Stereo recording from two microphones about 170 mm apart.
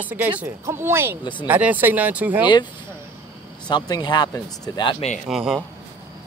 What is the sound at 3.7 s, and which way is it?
Speech, 25° left (ahead or behind).